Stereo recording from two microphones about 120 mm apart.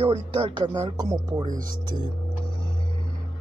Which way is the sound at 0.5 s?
40° right (ahead or behind).